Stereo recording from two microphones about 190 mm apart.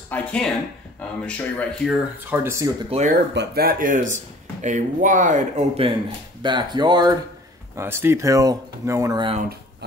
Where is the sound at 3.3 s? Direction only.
55° right (ahead or behind).